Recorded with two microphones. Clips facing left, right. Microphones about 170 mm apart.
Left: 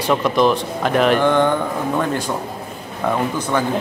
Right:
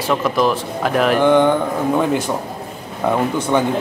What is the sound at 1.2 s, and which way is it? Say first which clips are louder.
Speech: right 3 dB; 15° right (ahead or behind).